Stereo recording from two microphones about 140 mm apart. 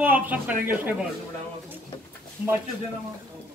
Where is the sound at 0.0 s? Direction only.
10° right (ahead or behind).